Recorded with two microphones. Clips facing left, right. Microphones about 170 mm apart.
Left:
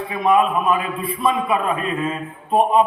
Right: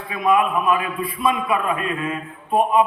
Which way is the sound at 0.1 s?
25° left (ahead or behind).